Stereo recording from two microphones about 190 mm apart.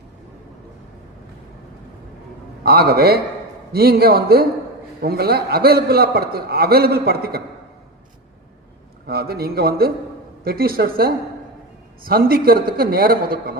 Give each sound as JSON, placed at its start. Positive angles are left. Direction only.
{"t": 2.6, "sound": "a man's voice", "side_deg": -55}
{"t": 9.0, "sound": "a man's voice", "side_deg": -55}